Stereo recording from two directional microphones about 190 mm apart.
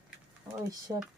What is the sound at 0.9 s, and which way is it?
Speech, 15° right (ahead or behind).